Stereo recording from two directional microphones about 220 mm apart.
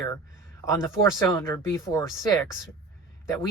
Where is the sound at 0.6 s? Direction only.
15° left (ahead or behind).